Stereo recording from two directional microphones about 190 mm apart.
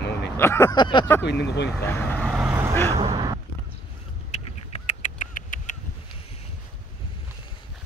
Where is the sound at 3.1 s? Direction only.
20° right (ahead or behind).